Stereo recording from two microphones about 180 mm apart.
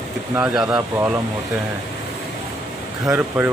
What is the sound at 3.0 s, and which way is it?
Speech, 15° right (ahead or behind).